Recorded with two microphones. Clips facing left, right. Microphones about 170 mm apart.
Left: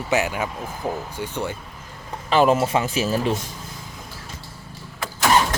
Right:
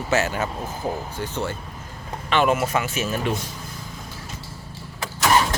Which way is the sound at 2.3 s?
35° left (ahead or behind).